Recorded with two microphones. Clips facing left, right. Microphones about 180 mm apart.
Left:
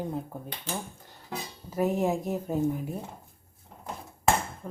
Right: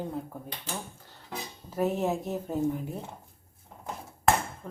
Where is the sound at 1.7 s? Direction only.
10° left (ahead or behind).